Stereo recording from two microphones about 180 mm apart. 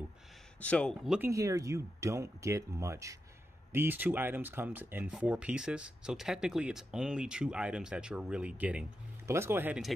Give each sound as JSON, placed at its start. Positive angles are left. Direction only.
{"t": 0.6, "sound": "speech", "side_deg": 5}
{"t": 1.3, "sound": "speech", "side_deg": -20}